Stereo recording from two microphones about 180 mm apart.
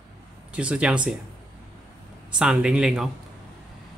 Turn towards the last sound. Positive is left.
turn(degrees=-5)  # may be behind; listen again after turning